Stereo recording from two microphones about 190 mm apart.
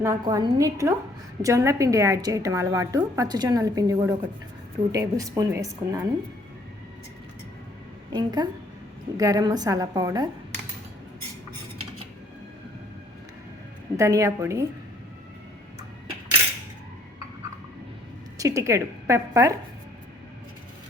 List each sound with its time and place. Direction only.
0.0 s a woman's voice: 15° right (ahead or behind)
8.1 s a woman's voice: 20° right (ahead or behind)
13.9 s a woman's voice: 15° right (ahead or behind)
18.3 s a woman's voice: 15° right (ahead or behind)